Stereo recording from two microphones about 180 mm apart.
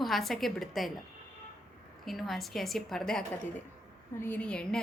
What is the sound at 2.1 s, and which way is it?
A woman's voice, centre (ahead or behind).